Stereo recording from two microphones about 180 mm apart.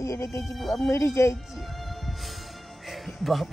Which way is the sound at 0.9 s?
15° left (ahead or behind).